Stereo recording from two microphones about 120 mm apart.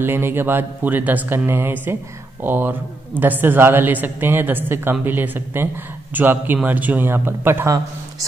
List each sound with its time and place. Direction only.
0.0 s a man's voice: 20° right (ahead or behind)